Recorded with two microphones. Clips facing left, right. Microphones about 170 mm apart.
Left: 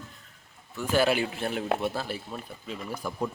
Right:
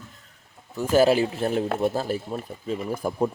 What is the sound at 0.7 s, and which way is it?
Speech, 40° right (ahead or behind).